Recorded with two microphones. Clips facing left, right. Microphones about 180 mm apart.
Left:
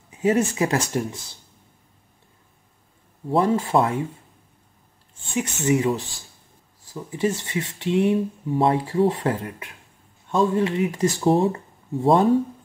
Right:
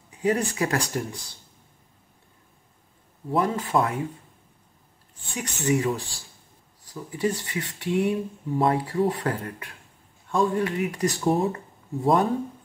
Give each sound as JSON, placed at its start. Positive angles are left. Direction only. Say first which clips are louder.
{"t": 0.1, "sound": "speech", "louder": "left 4 dB", "side_deg": 25}
{"t": 3.3, "sound": "speech", "louder": "left 4 dB", "side_deg": 30}
{"t": 5.3, "sound": "speech", "louder": "left 3 dB", "side_deg": 25}